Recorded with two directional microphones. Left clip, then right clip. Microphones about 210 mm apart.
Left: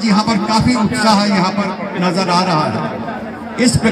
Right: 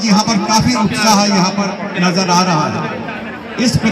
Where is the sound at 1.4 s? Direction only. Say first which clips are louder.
Right 1 dB; 20° left (ahead or behind).